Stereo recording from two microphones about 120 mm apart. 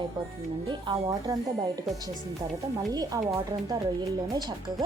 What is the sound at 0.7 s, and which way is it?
Speech, 45° right (ahead or behind).